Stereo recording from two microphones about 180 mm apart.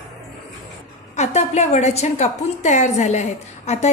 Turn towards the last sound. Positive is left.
turn(degrees=35)  # may be behind; listen again after turning